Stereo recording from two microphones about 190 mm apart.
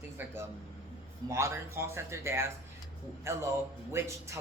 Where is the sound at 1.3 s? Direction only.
15° right (ahead or behind).